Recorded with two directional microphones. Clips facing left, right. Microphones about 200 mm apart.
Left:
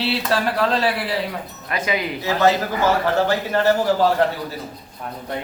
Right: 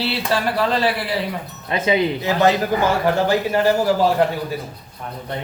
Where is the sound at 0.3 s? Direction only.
Centre (ahead or behind).